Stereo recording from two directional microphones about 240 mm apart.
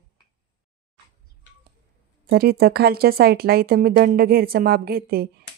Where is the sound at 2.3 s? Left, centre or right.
Right.